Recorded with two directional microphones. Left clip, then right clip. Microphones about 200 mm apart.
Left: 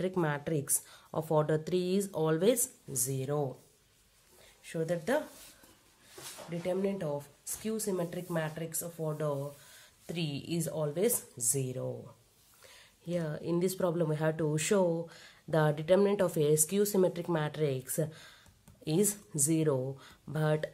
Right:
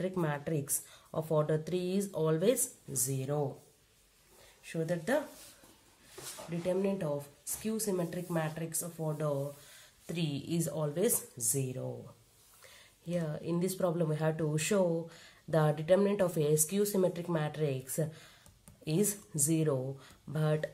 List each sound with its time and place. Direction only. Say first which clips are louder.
0.0 s speech: left 2 dB; 30° left (ahead or behind)
4.6 s speech: left 1 dB; 25° left (ahead or behind)
6.6 s speech: right 1 dB; 20° left (ahead or behind)